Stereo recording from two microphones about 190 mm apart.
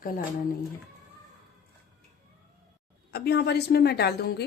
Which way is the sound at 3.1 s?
55° left (ahead or behind).